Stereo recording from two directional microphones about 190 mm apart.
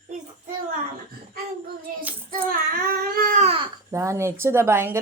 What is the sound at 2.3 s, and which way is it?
Speech, 45° right (ahead or behind).